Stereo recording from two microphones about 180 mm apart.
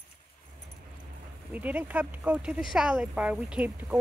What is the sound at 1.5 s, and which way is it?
Speech, 10° right (ahead or behind).